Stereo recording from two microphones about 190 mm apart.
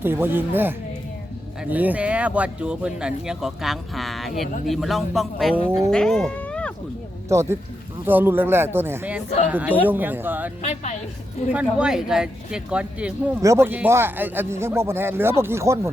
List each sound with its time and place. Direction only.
0.0 s speech: 10° right (ahead or behind)
5.9 s cat: 5° left (ahead or behind)
7.3 s speech: 15° right (ahead or behind)
10.6 s a woman's voice: 35° left (ahead or behind)
11.5 s speech: 5° right (ahead or behind)